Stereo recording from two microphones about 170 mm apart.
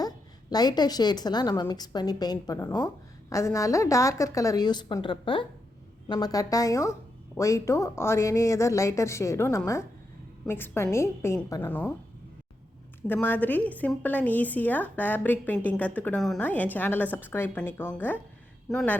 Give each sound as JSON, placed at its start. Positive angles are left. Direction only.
{"t": 0.5, "sound": "a woman's voice", "side_deg": 25}
{"t": 13.0, "sound": "a woman's voice", "side_deg": 10}